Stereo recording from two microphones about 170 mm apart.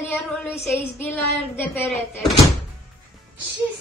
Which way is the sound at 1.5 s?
15° left (ahead or behind).